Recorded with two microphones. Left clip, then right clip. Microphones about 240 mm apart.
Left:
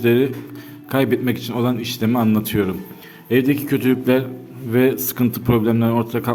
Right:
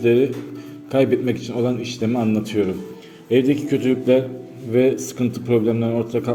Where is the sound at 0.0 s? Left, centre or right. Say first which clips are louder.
Even; left.